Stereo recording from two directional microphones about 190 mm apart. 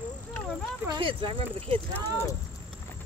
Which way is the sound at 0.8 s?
25° right (ahead or behind).